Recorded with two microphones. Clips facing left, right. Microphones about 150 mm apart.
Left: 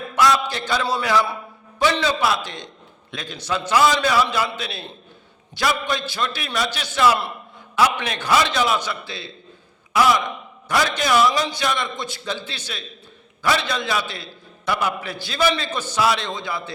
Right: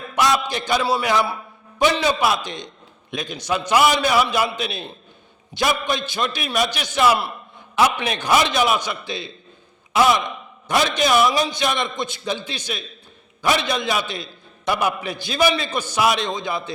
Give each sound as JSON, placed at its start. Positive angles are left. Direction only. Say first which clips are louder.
{"t": 0.1, "sound": "a man's voice", "louder": "left 1 dB", "side_deg": -20}